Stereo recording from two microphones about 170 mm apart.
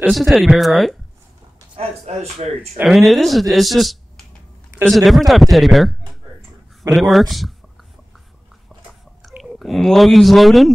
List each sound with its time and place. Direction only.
0.1 s speech: centre (ahead or behind)
1.8 s a man's voice: 35° right (ahead or behind)
2.8 s speech: centre (ahead or behind)
9.4 s speech: centre (ahead or behind)